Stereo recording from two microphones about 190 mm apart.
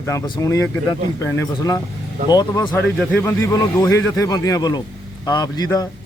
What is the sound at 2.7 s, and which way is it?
Speech, 5° left (ahead or behind).